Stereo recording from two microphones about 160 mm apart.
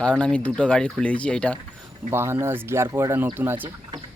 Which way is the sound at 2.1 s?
15° right (ahead or behind).